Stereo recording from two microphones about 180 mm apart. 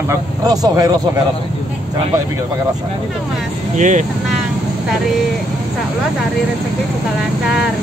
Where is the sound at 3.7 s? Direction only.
45° right (ahead or behind).